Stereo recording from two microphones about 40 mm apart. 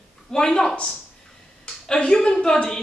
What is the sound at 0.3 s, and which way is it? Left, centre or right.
Speech, centre.